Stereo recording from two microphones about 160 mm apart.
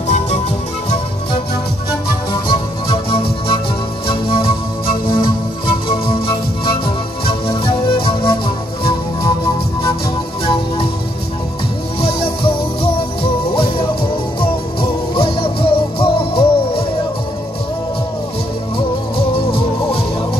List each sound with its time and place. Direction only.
2.3 s music: 30° left (ahead or behind)
10.4 s music: 35° left (ahead or behind)
12.0 s music: 35° left (ahead or behind)
19.1 s music: 35° left (ahead or behind)